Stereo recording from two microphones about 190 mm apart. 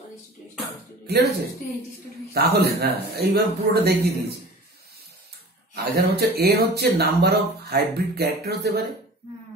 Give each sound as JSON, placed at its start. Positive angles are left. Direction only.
{"t": 1.0, "sound": "speech", "side_deg": -60}
{"t": 2.3, "sound": "speech", "side_deg": -60}
{"t": 5.8, "sound": "speech", "side_deg": -55}